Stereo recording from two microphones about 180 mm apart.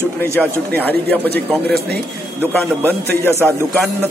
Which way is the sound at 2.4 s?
10° left (ahead or behind).